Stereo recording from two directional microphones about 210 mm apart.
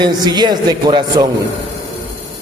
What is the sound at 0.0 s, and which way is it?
A man's voice, 20° right (ahead or behind).